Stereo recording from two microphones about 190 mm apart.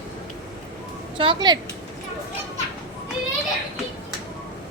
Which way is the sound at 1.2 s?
25° right (ahead or behind).